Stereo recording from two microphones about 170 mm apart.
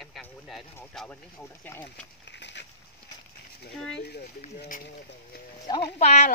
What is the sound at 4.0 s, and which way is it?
Speech, 70° left (ahead or behind).